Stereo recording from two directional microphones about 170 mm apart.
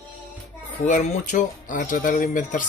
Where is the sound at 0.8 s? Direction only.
45° left (ahead or behind).